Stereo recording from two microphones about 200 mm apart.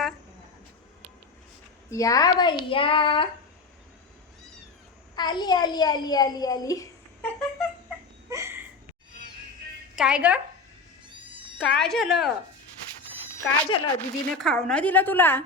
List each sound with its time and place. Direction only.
1.9 s a child's voice: 15° left (ahead or behind)
5.1 s a child's voice: 20° left (ahead or behind)
8.3 s a sound: 15° right (ahead or behind)
9.9 s speech: 5° right (ahead or behind)
11.5 s speech: 5° left (ahead or behind)
13.7 s a child's voice: 25° left (ahead or behind)
14.3 s a woman's voice: 5° left (ahead or behind)